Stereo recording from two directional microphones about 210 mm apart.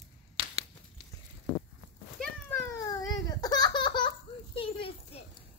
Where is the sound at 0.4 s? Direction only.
25° right (ahead or behind).